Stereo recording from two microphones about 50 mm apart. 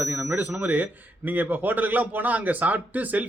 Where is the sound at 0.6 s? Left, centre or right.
Right.